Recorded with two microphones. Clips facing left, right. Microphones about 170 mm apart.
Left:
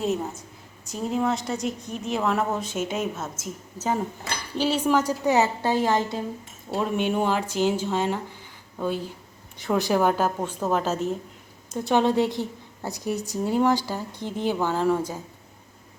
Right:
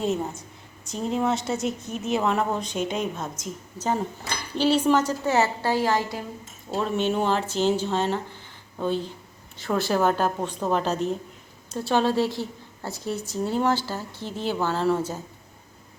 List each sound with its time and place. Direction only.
0.0 s a woman's voice: centre (ahead or behind)
9.6 s a woman's voice: 15° left (ahead or behind)
11.7 s a woman's voice: 20° left (ahead or behind)